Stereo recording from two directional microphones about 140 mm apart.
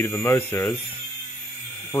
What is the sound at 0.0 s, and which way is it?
Speech, 20° left (ahead or behind).